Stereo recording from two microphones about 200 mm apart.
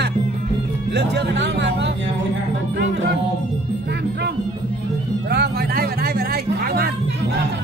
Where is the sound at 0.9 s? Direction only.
60° right (ahead or behind).